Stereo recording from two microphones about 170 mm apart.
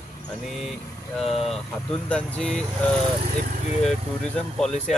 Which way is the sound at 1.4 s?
5° left (ahead or behind).